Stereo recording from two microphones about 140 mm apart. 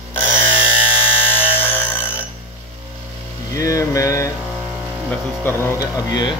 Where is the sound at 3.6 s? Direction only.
25° left (ahead or behind).